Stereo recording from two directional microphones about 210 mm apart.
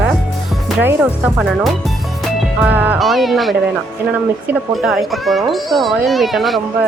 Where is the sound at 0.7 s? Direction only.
10° right (ahead or behind).